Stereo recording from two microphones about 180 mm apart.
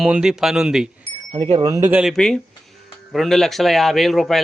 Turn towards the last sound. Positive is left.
turn(degrees=0)  # may be behind; listen again after turning